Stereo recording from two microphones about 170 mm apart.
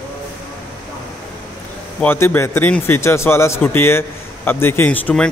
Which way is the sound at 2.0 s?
10° left (ahead or behind).